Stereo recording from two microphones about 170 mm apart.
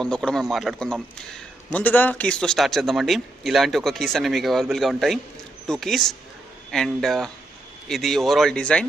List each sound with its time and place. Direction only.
0.0 s a man's voice: 5° left (ahead or behind)